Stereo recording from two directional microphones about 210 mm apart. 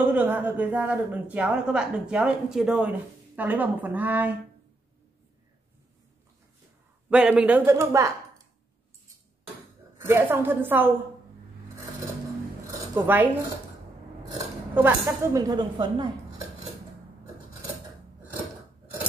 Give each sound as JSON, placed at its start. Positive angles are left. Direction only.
{"t": 0.1, "sound": "speech", "side_deg": -10}
{"t": 7.1, "sound": "speech", "side_deg": -5}
{"t": 9.9, "sound": "speech", "side_deg": -10}
{"t": 12.9, "sound": "speech", "side_deg": -10}
{"t": 14.3, "sound": "speech", "side_deg": -15}